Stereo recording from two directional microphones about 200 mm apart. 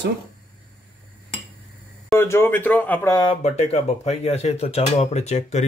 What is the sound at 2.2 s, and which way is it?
Speech, 10° left (ahead or behind).